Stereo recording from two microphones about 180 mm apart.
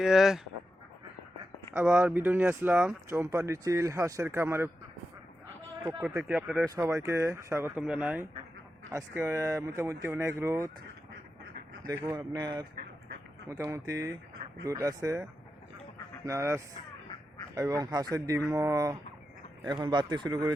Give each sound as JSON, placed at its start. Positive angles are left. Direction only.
{"t": 0.0, "sound": "speech", "side_deg": -5}
{"t": 1.7, "sound": "speech", "side_deg": -5}
{"t": 6.0, "sound": "speech", "side_deg": -5}
{"t": 12.0, "sound": "speech", "side_deg": -20}
{"t": 16.2, "sound": "speech", "side_deg": -15}